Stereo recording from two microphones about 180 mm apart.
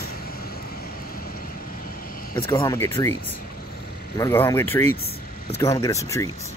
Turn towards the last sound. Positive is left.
turn(degrees=15)  # may be behind; listen again after turning